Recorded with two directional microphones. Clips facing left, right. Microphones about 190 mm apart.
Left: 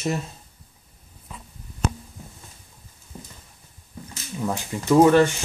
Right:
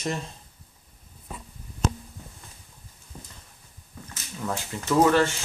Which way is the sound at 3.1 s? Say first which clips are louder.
Left 4 dB; 15° left (ahead or behind).